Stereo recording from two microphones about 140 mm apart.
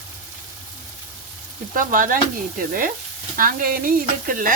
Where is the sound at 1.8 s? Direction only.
75° right (ahead or behind).